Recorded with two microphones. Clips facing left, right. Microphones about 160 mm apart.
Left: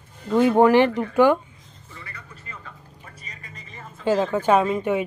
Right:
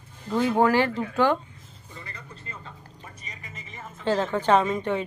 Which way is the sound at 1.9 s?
25° right (ahead or behind).